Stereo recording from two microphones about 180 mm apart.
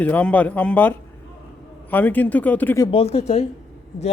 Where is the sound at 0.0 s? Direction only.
10° left (ahead or behind).